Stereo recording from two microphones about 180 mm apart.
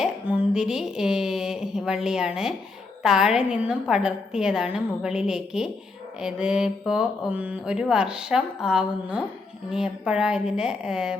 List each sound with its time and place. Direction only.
0.0 s speech: 5° right (ahead or behind)